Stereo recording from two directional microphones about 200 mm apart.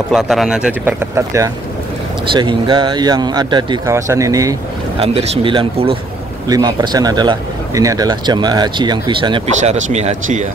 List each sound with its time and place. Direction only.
0.1 s speech: centre (ahead or behind)
2.3 s a man's voice: 25° right (ahead or behind)
5.0 s a man's voice: 30° right (ahead or behind)
9.8 s speech: 35° right (ahead or behind)